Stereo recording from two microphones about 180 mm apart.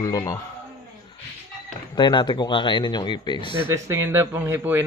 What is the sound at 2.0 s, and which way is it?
A man's voice, 25° left (ahead or behind).